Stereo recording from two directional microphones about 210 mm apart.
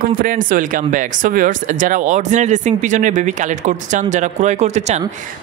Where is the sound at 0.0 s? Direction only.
40° right (ahead or behind).